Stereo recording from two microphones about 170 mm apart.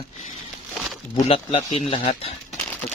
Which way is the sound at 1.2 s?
35° left (ahead or behind).